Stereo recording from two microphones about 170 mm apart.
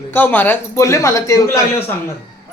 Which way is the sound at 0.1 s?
10° left (ahead or behind).